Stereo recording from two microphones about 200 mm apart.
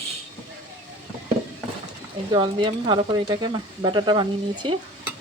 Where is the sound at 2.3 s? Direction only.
25° right (ahead or behind).